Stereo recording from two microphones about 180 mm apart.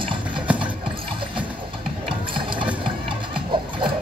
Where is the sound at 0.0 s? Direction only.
25° right (ahead or behind).